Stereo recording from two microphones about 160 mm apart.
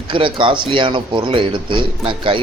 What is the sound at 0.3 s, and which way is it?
A man's voice, 30° right (ahead or behind).